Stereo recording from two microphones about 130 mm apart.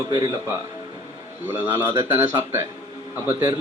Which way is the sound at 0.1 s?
30° right (ahead or behind).